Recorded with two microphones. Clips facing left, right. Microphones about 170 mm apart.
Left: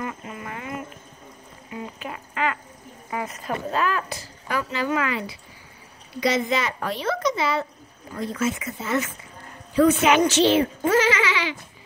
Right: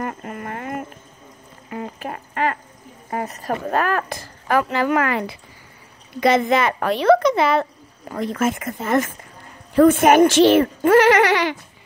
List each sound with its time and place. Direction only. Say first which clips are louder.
0.0 s a sound: right 4 dB; 50° right (ahead or behind)
3.1 s speech: right 4 dB; 40° right (ahead or behind)
3.6 s speech: right 4 dB; 55° right (ahead or behind)